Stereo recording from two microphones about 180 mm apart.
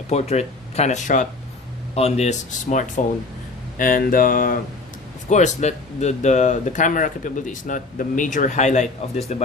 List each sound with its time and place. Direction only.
0.1 s speech: 35° left (ahead or behind)